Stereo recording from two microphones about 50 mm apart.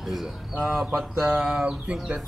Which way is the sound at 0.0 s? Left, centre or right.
Centre.